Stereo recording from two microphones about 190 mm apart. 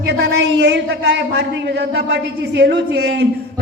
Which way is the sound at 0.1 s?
60° right (ahead or behind).